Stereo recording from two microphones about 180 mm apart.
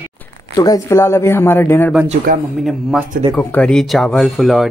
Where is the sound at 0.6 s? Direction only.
20° left (ahead or behind).